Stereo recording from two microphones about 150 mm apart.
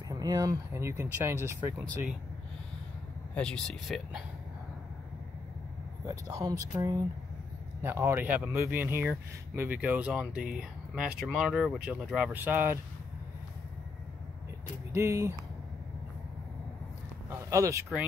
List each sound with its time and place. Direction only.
0.1 s speech: 25° right (ahead or behind)
3.3 s speech: 5° left (ahead or behind)
6.0 s speech: 25° right (ahead or behind)
14.9 s speech: 20° right (ahead or behind)
17.3 s a sound: 20° right (ahead or behind)